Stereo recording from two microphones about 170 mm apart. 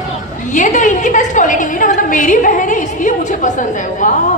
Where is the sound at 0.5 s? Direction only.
50° left (ahead or behind).